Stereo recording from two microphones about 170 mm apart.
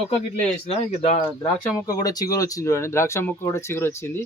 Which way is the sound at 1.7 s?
20° left (ahead or behind).